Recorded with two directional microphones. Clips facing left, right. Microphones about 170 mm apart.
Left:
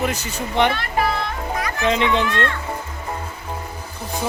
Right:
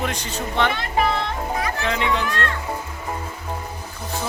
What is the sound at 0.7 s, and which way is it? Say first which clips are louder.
Speech: even; 20° right (ahead or behind).